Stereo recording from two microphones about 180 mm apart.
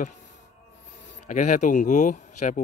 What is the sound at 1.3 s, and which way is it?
Speech, 45° left (ahead or behind).